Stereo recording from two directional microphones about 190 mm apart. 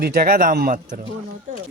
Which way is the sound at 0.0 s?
50° right (ahead or behind).